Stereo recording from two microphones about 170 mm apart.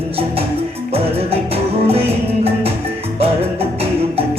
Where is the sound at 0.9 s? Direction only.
35° right (ahead or behind).